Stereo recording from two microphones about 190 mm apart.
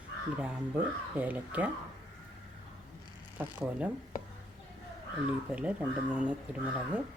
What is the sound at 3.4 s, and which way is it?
Speech, 10° right (ahead or behind).